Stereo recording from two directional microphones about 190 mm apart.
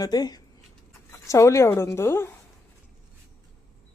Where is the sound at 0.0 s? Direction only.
20° left (ahead or behind).